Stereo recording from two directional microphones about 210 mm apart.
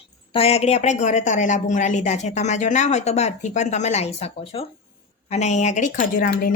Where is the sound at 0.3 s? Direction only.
30° left (ahead or behind).